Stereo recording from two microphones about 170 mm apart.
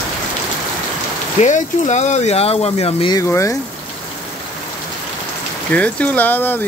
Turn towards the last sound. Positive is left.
turn(degrees=10)  # may be behind; listen again after turning